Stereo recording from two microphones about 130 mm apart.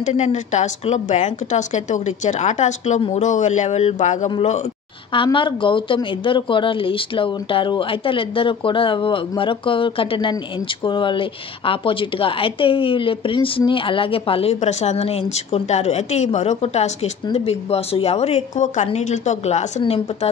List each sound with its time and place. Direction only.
0.0 s a woman's voice: 65° left (ahead or behind)
5.1 s a woman's voice: 40° left (ahead or behind); by 19.6 s 65° left (ahead or behind)
19.8 s a woman's voice: 50° left (ahead or behind)